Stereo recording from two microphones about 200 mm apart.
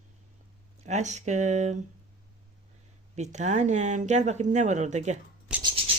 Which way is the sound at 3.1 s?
35° right (ahead or behind).